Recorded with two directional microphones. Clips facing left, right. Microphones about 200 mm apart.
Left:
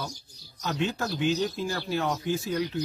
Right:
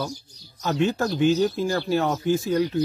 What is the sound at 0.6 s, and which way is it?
Speech, 45° right (ahead or behind).